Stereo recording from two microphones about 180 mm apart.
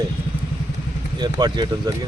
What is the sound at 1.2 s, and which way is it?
Speech, 25° right (ahead or behind).